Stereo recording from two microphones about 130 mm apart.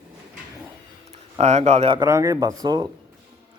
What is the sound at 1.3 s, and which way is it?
Speech, 55° right (ahead or behind).